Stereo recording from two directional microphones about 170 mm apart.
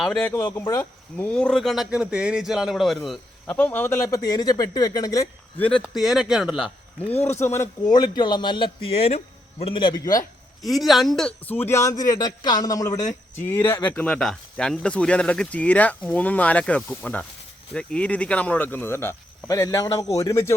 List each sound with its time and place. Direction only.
0.2 s speech: 10° left (ahead or behind)
5.8 s speech: centre (ahead or behind)
7.3 s speech: 15° left (ahead or behind)
10.6 s speech: centre (ahead or behind); by 20.5 s 15° left (ahead or behind)